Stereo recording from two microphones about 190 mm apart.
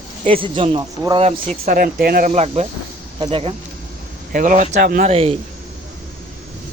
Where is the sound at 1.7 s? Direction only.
45° right (ahead or behind); by 3.5 s 30° right (ahead or behind).